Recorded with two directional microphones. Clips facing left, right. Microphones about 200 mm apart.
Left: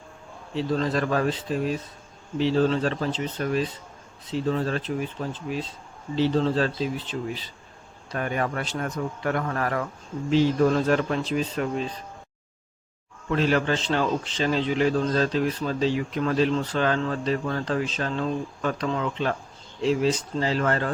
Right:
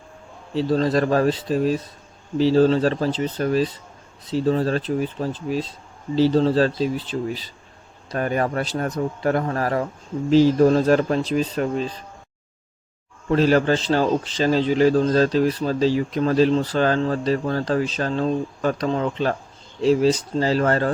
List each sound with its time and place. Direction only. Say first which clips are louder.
0.5 s a man's voice: right 5 dB; 35° right (ahead or behind)
13.3 s a man's voice: right 6 dB; 40° right (ahead or behind)